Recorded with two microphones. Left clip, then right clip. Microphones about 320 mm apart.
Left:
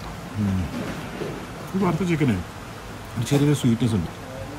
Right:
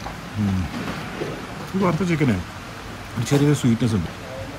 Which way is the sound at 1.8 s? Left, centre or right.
Centre.